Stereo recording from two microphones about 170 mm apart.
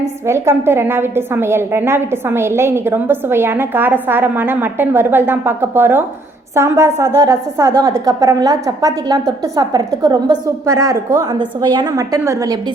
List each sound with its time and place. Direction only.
0.0 s a woman's voice: 15° right (ahead or behind)